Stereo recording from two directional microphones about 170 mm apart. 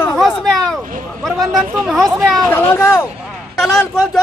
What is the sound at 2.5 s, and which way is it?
Speech, 20° left (ahead or behind).